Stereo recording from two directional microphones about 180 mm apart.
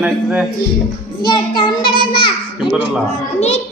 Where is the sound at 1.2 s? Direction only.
25° left (ahead or behind).